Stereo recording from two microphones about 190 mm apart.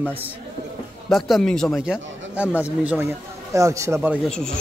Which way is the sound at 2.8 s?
15° right (ahead or behind).